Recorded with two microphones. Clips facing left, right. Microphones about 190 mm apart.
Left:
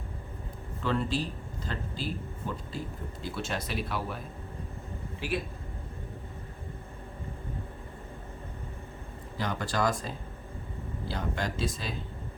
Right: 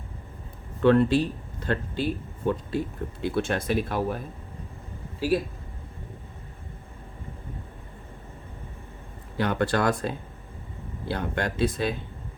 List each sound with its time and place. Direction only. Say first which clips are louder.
0.8 s speech: right 11 dB; 65° right (ahead or behind)
5.2 s speech: right 9 dB; 40° right (ahead or behind)
9.4 s speech: right 6 dB; 65° right (ahead or behind)
11.1 s speech: right 5 dB; 60° right (ahead or behind)